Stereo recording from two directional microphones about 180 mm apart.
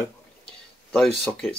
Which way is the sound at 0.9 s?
Centre (ahead or behind).